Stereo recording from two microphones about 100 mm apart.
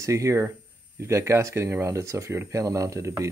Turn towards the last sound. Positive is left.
turn(degrees=-30)  # may be behind; listen again after turning